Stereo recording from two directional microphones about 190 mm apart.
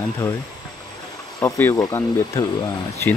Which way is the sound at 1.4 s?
15° left (ahead or behind).